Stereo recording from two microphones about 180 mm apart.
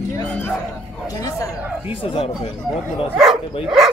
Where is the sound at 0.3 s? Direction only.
10° left (ahead or behind).